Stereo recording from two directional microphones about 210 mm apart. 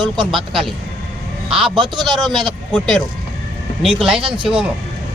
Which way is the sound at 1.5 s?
5° right (ahead or behind).